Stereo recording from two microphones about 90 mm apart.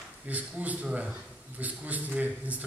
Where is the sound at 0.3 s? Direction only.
15° right (ahead or behind).